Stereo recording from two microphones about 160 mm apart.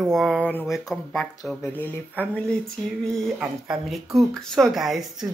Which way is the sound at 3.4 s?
Centre (ahead or behind).